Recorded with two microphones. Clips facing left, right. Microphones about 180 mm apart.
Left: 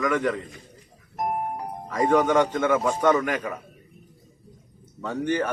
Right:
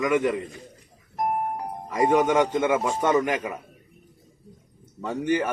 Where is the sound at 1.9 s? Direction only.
15° right (ahead or behind).